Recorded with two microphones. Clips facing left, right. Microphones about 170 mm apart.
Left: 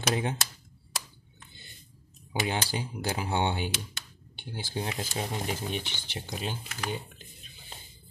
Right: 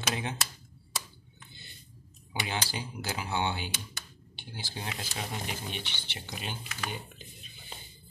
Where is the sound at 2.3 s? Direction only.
45° left (ahead or behind).